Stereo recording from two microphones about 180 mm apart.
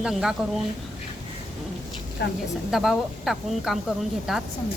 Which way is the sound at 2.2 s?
70° left (ahead or behind).